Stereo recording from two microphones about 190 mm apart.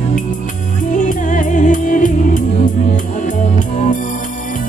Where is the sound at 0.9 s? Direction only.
40° left (ahead or behind).